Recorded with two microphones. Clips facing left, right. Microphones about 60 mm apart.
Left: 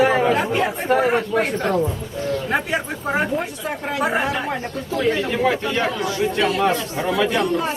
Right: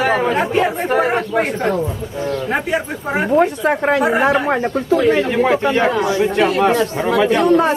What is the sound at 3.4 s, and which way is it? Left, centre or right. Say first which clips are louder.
Speech: right 11 dB; right.